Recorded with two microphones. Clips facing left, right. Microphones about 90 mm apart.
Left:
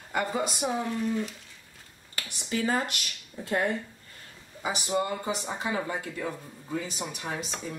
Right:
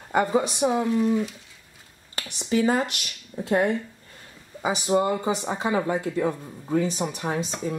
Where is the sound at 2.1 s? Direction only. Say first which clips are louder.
Right 7 dB; 25° right (ahead or behind).